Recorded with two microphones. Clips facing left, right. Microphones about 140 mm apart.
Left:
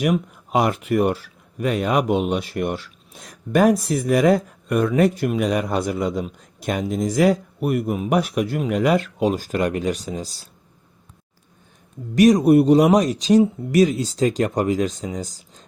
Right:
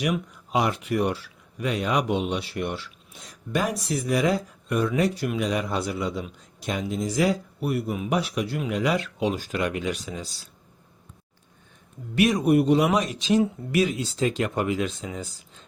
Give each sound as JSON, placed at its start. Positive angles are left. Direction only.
{"t": 0.0, "sound": "speech", "side_deg": 50}
{"t": 12.1, "sound": "speech", "side_deg": 40}